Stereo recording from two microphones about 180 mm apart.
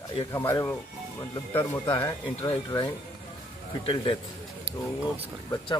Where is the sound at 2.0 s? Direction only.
25° left (ahead or behind).